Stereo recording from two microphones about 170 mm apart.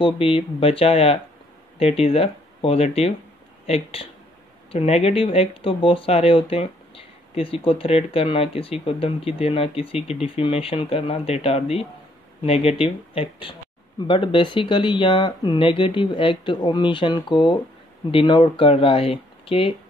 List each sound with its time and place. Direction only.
0.0 s speech: 30° left (ahead or behind)